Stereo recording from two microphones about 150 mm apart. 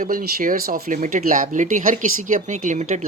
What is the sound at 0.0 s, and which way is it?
Speech, 70° right (ahead or behind).